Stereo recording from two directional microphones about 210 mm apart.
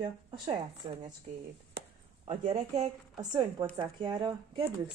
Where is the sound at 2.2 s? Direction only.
35° right (ahead or behind).